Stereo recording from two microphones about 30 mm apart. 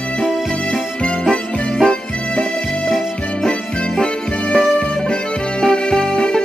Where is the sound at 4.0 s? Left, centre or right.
Left.